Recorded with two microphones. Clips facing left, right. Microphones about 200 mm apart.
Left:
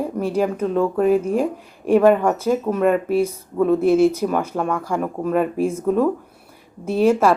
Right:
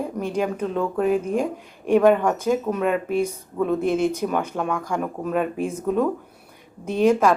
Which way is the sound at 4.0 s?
30° left (ahead or behind).